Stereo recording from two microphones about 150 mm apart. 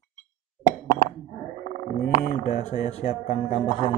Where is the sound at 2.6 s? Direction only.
45° left (ahead or behind).